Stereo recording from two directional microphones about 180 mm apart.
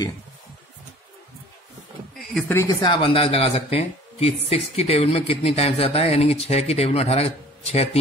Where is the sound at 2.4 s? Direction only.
15° left (ahead or behind).